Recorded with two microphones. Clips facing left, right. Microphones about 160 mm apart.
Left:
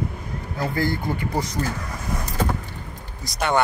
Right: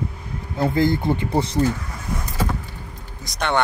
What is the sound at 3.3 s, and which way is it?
Speech, 5° left (ahead or behind).